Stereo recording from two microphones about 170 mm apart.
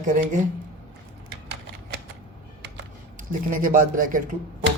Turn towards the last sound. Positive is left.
turn(degrees=-55)  # may be behind; listen again after turning